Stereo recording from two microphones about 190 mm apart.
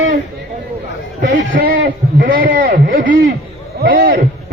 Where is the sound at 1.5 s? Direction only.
45° right (ahead or behind).